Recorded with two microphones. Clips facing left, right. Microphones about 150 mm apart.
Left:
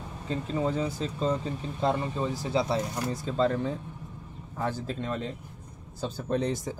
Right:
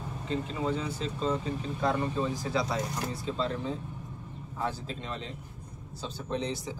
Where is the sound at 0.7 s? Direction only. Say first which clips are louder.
Left 2 dB; 40° left (ahead or behind).